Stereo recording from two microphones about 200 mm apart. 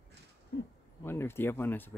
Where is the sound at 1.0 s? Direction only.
10° left (ahead or behind).